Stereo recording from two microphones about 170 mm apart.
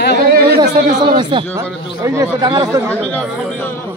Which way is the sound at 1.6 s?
15° right (ahead or behind).